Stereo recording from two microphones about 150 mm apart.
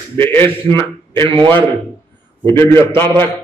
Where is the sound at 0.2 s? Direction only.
15° left (ahead or behind).